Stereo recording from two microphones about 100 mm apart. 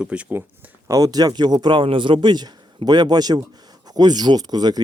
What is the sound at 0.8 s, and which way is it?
A man's voice, 35° right (ahead or behind).